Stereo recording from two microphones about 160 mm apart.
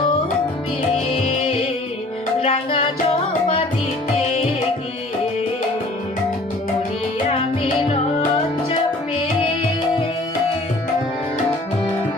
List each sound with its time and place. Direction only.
1.1 s music: 35° left (ahead or behind)
7.3 s music: 35° left (ahead or behind)